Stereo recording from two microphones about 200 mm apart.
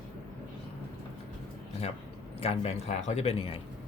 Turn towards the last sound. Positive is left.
turn(degrees=30)  # may be behind; listen again after turning